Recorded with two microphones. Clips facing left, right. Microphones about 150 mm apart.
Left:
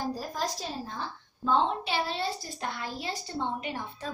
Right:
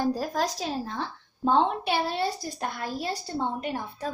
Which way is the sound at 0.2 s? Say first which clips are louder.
Right 5 dB; 90° right.